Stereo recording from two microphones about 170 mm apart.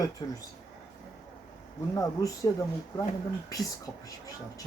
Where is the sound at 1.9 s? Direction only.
20° left (ahead or behind).